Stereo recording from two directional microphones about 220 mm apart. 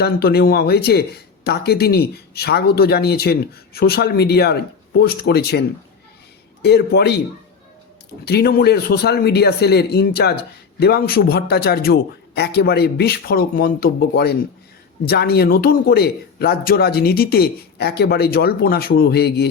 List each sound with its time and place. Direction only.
0.0 s speech: 45° left (ahead or behind)
8.2 s speech: 45° left (ahead or behind)